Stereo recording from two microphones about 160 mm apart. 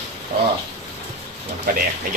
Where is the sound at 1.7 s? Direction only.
65° right (ahead or behind).